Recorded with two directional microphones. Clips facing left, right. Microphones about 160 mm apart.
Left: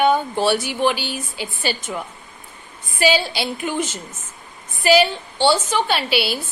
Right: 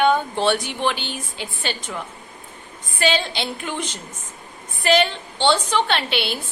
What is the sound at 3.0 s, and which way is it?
A woman's voice, 5° left (ahead or behind).